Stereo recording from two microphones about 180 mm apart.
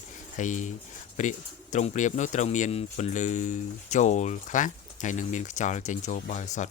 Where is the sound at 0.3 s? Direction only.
45° left (ahead or behind).